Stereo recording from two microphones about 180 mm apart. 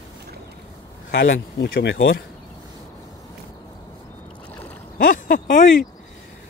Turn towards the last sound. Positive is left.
turn(degrees=50)  # may be behind; listen again after turning